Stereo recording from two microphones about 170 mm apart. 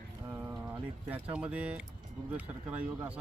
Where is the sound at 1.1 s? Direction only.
10° right (ahead or behind).